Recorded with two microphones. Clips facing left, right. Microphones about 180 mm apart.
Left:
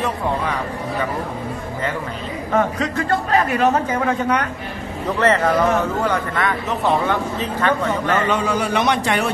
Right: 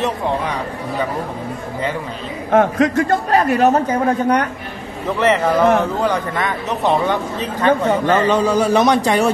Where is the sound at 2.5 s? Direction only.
55° right (ahead or behind); by 4.4 s 35° right (ahead or behind).